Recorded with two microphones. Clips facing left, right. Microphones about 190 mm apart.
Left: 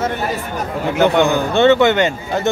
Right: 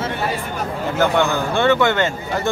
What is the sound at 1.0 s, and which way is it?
A man's voice, 20° left (ahead or behind).